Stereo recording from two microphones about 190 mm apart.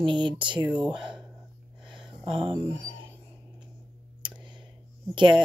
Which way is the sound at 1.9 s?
25° right (ahead or behind).